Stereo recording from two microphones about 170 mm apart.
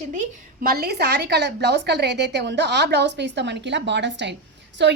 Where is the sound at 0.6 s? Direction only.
60° right (ahead or behind); by 4.9 s 90° right.